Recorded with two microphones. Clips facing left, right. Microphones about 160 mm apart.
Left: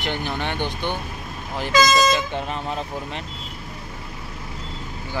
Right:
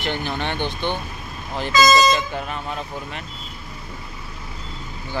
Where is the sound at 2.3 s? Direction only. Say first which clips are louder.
Left 1 dB; 25° left (ahead or behind).